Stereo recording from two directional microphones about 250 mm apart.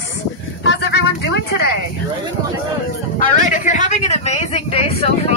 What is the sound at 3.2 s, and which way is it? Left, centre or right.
Speech, left.